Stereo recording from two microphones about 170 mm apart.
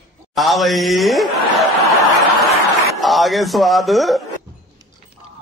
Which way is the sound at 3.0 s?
Centre (ahead or behind).